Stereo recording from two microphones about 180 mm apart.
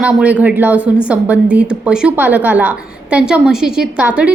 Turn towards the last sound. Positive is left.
turn(degrees=-5)  # may be behind; listen again after turning